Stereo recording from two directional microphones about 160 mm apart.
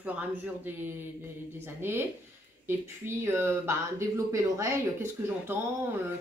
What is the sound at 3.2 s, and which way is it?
Speech, 15° right (ahead or behind).